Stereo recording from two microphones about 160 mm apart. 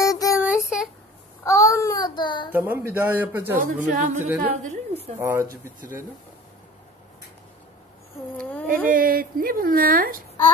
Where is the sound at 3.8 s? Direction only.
50° right (ahead or behind).